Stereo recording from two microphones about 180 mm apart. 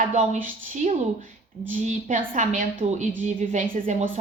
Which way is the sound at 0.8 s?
40° right (ahead or behind).